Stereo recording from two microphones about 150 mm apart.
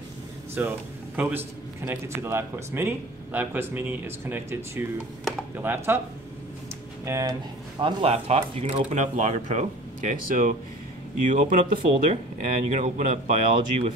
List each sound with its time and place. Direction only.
0.6 s speech: 15° right (ahead or behind)
7.1 s speech: 20° right (ahead or behind)
7.8 s speech: 40° right (ahead or behind)
8.9 s speech: 50° right (ahead or behind)
12.6 s speech: 50° right (ahead or behind)